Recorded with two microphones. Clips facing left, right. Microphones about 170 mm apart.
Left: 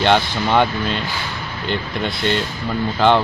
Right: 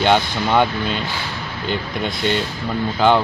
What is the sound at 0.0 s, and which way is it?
Speech, 10° right (ahead or behind).